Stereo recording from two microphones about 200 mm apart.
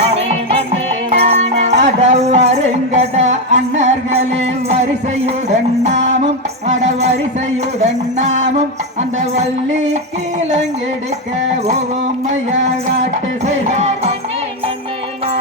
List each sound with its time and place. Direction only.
1.1 s music: 35° right (ahead or behind)
5.9 s music: 65° right (ahead or behind)
6.2 s music: 35° right (ahead or behind)
8.2 s music: 35° right (ahead or behind)
13.0 s music: 35° right (ahead or behind)